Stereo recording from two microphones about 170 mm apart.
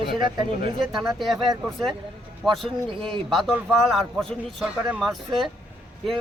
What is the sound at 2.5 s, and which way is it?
Speech, 30° right (ahead or behind).